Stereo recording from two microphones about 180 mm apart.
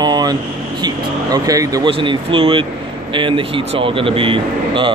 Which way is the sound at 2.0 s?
30° right (ahead or behind).